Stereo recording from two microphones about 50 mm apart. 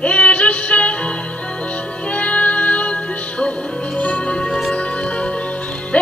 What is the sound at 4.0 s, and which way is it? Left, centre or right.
Music, left.